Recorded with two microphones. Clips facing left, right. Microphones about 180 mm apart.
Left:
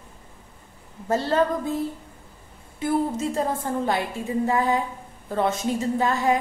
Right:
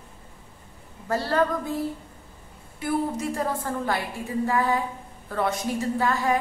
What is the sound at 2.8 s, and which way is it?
A woman's voice, 25° left (ahead or behind).